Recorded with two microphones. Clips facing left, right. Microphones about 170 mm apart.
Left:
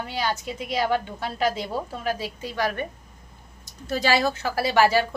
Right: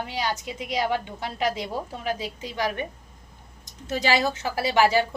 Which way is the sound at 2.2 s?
15° right (ahead or behind).